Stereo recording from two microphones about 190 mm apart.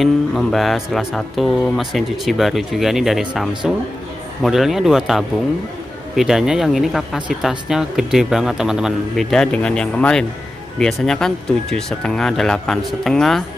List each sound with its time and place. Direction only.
0.0 s speech: centre (ahead or behind)